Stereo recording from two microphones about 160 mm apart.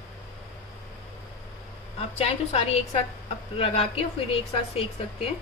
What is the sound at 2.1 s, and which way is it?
A woman's voice, 40° left (ahead or behind).